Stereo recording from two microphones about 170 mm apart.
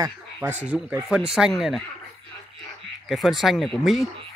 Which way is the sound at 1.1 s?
5° right (ahead or behind).